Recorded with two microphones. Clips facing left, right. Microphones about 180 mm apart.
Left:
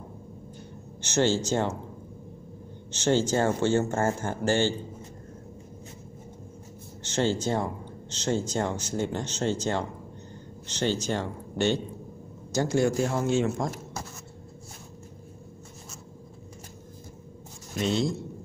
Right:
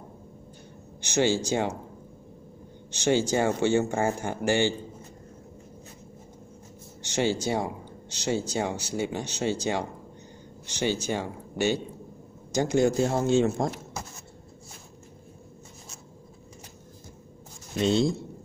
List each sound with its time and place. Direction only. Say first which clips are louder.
1.0 s speech: even; 15° right (ahead or behind)
2.9 s speech: even; 15° right (ahead or behind)
7.0 s speech: even; 15° right (ahead or behind)
17.7 s speech: right 3 dB; 30° right (ahead or behind)